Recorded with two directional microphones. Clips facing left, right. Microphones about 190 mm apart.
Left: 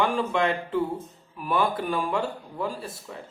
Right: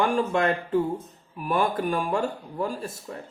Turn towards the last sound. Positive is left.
turn(degrees=-45)  # may be behind; listen again after turning